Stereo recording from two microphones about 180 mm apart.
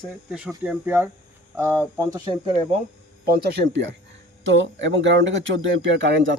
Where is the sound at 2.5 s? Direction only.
30° right (ahead or behind).